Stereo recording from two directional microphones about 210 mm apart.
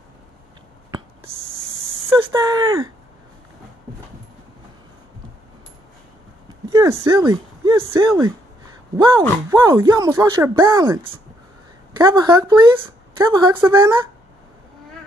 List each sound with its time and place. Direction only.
2.0 s speech: 15° right (ahead or behind)
6.7 s speech: 15° right (ahead or behind)
9.5 s speech: 15° right (ahead or behind)